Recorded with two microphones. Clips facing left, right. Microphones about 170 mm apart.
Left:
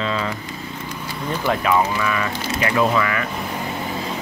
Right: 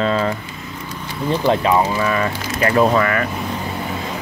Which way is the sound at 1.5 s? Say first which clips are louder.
Right 2 dB; 25° right (ahead or behind).